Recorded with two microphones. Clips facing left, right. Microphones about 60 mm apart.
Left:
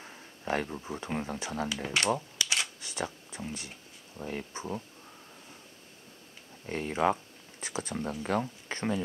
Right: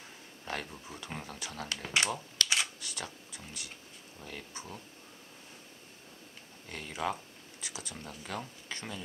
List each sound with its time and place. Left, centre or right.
0.0 s speech: left
1.7 s speech: centre
2.4 s camera: centre
2.8 s speech: left
6.6 s speech: left